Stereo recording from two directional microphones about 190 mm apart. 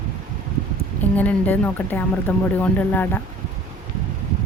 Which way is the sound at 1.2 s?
10° left (ahead or behind).